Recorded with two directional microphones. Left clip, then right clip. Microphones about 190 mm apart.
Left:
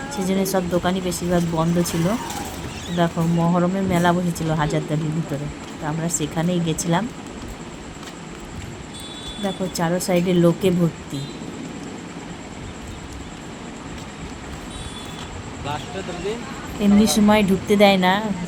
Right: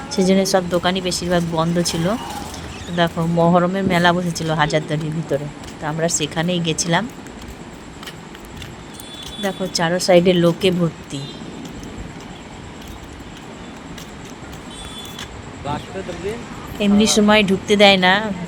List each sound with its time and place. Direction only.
0.1 s speech: 25° right (ahead or behind)
9.4 s speech: 25° right (ahead or behind)
16.8 s speech: 25° right (ahead or behind)